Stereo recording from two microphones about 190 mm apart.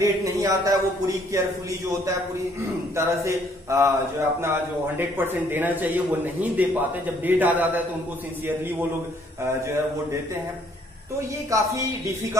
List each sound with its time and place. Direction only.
0.0 s speech: 15° right (ahead or behind)
3.0 s speech: 15° right (ahead or behind)
11.5 s speech: 15° right (ahead or behind)